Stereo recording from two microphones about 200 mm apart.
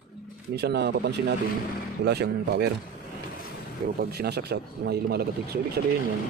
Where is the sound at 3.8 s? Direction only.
50° right (ahead or behind).